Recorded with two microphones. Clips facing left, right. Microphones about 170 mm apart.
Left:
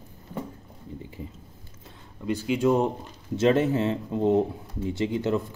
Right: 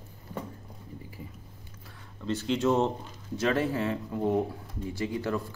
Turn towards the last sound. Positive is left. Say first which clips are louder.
# left 5 dB
turn(degrees=20)  # may be behind; listen again after turning